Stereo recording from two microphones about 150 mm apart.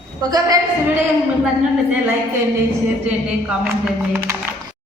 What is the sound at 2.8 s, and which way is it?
A man's voice, 5° right (ahead or behind).